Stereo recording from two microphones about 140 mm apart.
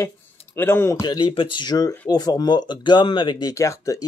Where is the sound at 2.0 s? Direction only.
25° left (ahead or behind).